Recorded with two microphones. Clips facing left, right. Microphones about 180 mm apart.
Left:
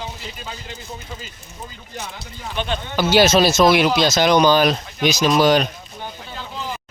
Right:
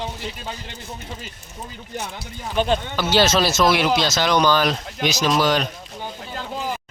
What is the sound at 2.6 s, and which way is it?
Speech, 40° right (ahead or behind).